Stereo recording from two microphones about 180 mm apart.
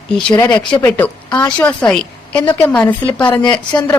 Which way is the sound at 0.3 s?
15° left (ahead or behind).